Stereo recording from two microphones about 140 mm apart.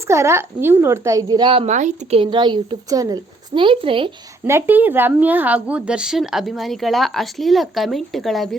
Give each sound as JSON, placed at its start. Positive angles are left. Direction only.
{"t": 0.1, "sound": "a woman's voice", "side_deg": -20}
{"t": 1.6, "sound": "speech", "side_deg": -55}
{"t": 2.1, "sound": "a woman's voice", "side_deg": -35}
{"t": 4.4, "sound": "a woman's voice", "side_deg": -15}